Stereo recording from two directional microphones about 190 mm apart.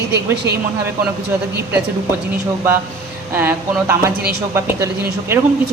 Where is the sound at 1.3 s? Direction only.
10° right (ahead or behind).